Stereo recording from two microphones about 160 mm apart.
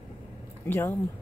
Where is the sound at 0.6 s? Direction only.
15° left (ahead or behind).